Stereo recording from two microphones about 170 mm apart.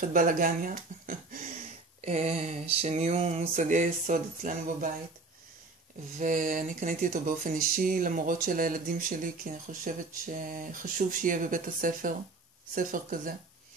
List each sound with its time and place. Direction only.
0.0 s speech: 50° right (ahead or behind)
2.0 s a sound: 35° right (ahead or behind)
6.1 s speech: 50° right (ahead or behind)